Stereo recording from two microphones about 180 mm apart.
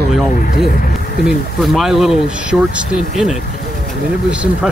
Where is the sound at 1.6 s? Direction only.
Centre (ahead or behind).